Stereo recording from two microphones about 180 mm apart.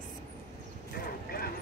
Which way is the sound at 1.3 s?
55° left (ahead or behind).